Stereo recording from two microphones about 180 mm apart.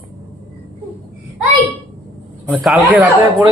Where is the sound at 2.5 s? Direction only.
5° right (ahead or behind).